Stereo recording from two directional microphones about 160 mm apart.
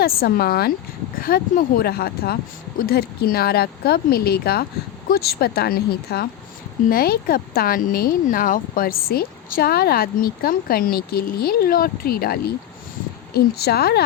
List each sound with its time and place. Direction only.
0.0 s speech: 70° left (ahead or behind)
13.3 s a woman's voice: 80° left